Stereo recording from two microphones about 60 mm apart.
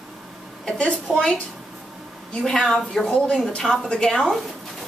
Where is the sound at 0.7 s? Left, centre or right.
Centre.